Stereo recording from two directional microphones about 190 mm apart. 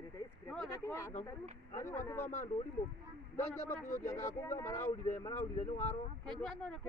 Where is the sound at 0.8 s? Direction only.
15° left (ahead or behind).